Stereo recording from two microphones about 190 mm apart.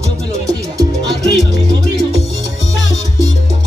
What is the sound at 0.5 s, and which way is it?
Music, 20° right (ahead or behind).